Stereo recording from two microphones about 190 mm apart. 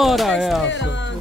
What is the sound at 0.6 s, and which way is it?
Speech, 70° left (ahead or behind).